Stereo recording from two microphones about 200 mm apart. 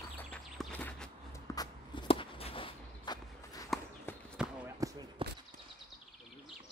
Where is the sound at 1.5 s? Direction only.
20° left (ahead or behind).